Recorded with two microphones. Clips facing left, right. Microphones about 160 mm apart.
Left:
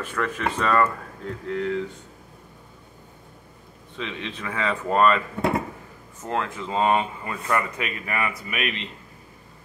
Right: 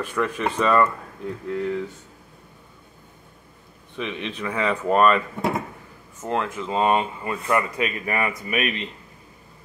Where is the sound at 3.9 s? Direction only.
15° right (ahead or behind).